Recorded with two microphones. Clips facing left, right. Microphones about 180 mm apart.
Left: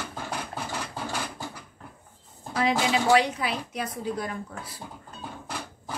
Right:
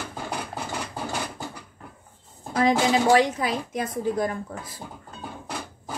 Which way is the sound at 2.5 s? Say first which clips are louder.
Right 4 dB; 45° right (ahead or behind).